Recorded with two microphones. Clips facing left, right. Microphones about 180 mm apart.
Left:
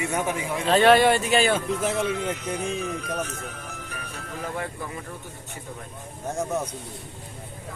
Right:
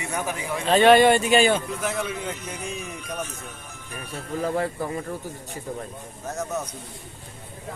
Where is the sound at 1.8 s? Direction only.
25° left (ahead or behind).